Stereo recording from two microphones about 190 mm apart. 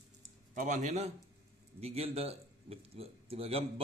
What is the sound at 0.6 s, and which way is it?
Speech, 40° right (ahead or behind).